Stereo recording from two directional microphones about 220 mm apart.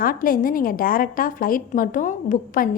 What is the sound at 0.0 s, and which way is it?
A woman's voice, 40° left (ahead or behind).